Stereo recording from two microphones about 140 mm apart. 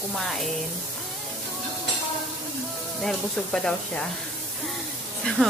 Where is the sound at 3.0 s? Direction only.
5° left (ahead or behind).